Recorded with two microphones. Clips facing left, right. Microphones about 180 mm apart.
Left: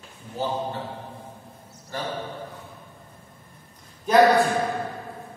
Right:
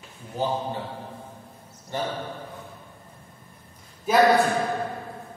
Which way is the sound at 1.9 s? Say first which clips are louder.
Right 3 dB; 25° right (ahead or behind).